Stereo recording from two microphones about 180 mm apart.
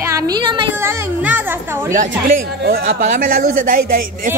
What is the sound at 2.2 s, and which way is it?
Speech, 55° right (ahead or behind).